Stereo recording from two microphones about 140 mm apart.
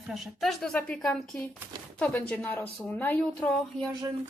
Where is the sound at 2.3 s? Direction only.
15° left (ahead or behind).